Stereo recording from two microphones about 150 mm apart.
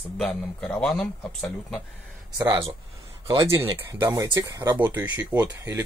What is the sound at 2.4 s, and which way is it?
Speech, 20° right (ahead or behind).